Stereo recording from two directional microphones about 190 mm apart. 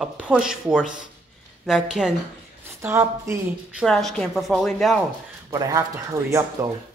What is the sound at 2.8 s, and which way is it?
Speech, 15° right (ahead or behind).